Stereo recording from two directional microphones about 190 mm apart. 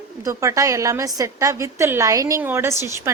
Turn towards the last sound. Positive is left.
turn(degrees=-15)  # may be behind; listen again after turning